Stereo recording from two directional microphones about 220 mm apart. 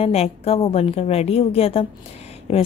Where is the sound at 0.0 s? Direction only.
30° left (ahead or behind).